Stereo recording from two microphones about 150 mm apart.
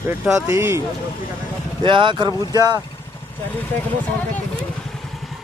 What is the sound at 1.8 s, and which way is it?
Speech, 35° right (ahead or behind).